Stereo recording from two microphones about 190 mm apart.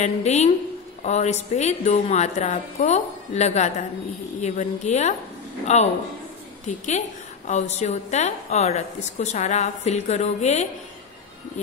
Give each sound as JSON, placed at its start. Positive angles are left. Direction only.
{"t": 0.0, "sound": "a woman's voice", "side_deg": 35}